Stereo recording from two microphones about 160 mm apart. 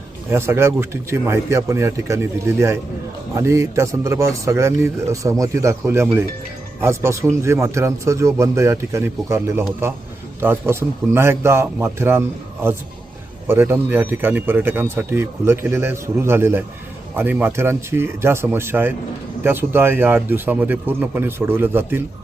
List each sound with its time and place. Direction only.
0.3 s a man's voice: 15° right (ahead or behind)
13.5 s a man's voice: 15° right (ahead or behind)